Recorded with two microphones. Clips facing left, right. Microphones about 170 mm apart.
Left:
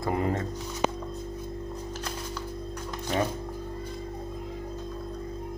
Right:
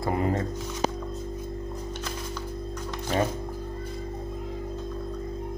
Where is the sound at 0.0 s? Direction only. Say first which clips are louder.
Right 1 dB; 20° right (ahead or behind).